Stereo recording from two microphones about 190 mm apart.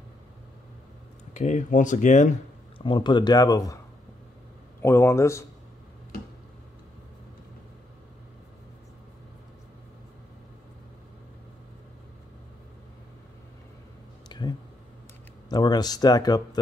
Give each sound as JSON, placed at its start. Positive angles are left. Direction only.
{"t": 1.3, "sound": "speech", "side_deg": 40}
{"t": 2.8, "sound": "speech", "side_deg": 25}
{"t": 4.8, "sound": "speech", "side_deg": 15}
{"t": 14.3, "sound": "a sound", "side_deg": 20}
{"t": 15.5, "sound": "speech", "side_deg": 20}